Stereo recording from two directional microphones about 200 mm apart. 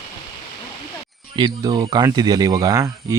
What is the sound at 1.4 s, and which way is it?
Speech, 20° right (ahead or behind).